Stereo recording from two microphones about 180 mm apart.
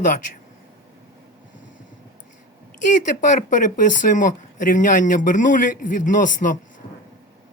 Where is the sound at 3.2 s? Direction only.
45° left (ahead or behind).